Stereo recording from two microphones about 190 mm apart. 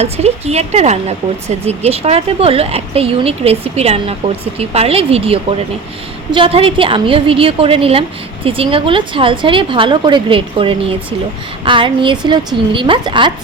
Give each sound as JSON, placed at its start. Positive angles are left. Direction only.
{"t": 0.0, "sound": "a woman's voice", "side_deg": -35}